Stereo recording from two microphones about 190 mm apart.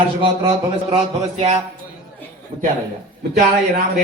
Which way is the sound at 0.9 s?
35° right (ahead or behind).